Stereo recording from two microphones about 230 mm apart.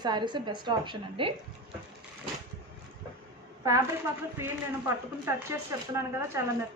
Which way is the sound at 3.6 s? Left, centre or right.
Centre.